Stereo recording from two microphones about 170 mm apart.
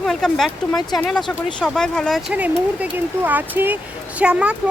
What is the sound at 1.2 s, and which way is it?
Speech, 25° left (ahead or behind).